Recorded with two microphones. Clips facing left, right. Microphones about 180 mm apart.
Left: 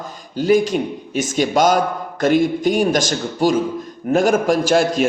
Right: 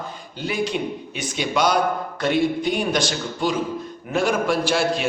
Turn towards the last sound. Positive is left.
turn(degrees=45)  # may be behind; listen again after turning